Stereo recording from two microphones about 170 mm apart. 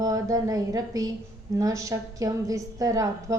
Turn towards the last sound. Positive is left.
turn(degrees=-20)  # may be behind; listen again after turning